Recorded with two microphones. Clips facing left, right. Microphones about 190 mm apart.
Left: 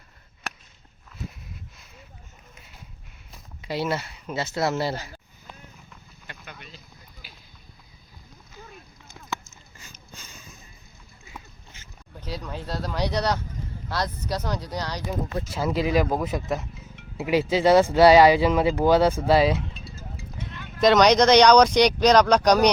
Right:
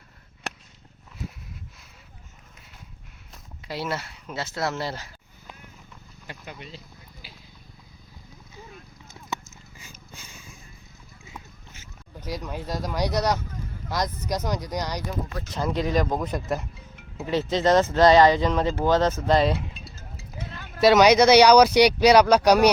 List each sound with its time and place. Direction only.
3.3 s speech: centre (ahead or behind)
6.4 s speech: 25° right (ahead or behind)
9.3 s sniff: 10° right (ahead or behind)
11.3 s a sound: 10° right (ahead or behind)
13.9 s speech: 15° right (ahead or behind)
15.4 s speech: 5° left (ahead or behind)
17.2 s speech: 10° left (ahead or behind)
20.8 s speech: 5° right (ahead or behind)